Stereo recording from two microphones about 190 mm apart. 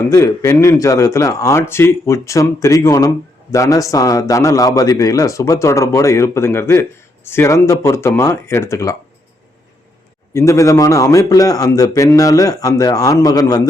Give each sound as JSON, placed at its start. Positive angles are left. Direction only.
{"t": 0.1, "sound": "a man's voice", "side_deg": 15}
{"t": 10.3, "sound": "a man's voice", "side_deg": 15}